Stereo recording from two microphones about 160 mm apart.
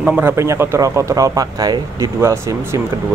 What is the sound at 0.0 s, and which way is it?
A man's voice, 10° right (ahead or behind).